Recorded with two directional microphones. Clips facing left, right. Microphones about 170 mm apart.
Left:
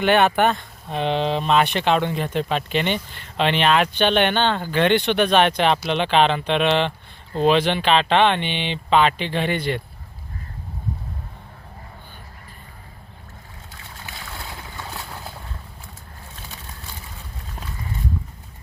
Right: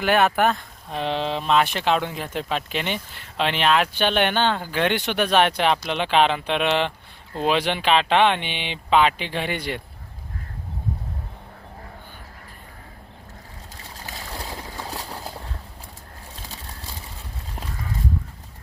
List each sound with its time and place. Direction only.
0.0 s speech: centre (ahead or behind)
13.9 s boat: 40° right (ahead or behind)
16.3 s a sound: 35° right (ahead or behind)